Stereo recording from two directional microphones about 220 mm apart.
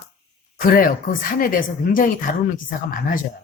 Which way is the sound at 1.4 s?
40° left (ahead or behind).